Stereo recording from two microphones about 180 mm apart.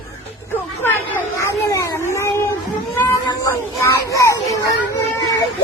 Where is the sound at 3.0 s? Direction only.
15° left (ahead or behind).